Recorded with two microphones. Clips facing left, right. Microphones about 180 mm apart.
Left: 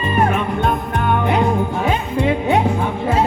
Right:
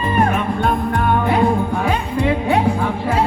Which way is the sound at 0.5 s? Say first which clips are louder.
Right 1 dB; 20° left (ahead or behind).